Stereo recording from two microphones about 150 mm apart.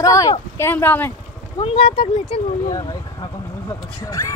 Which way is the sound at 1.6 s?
35° left (ahead or behind).